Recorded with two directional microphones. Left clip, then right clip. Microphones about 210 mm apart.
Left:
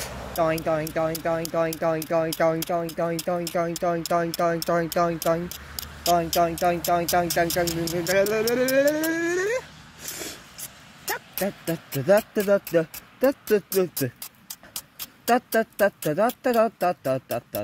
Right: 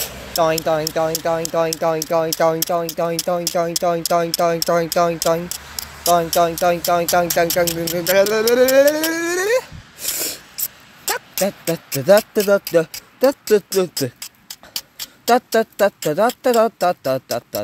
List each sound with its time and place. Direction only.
0.0 s speech: 25° right (ahead or behind)
8.1 s speech: 25° right (ahead or behind)
8.6 s dog: 30° right (ahead or behind)
10.1 s spray: 30° right (ahead or behind)
11.1 s speech: 25° right (ahead or behind)
14.7 s speech: 10° right (ahead or behind)